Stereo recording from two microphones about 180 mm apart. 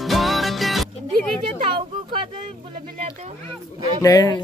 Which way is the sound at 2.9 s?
40° right (ahead or behind).